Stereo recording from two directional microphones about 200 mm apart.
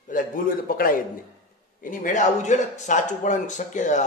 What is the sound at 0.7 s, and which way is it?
A man's voice, 45° left (ahead or behind).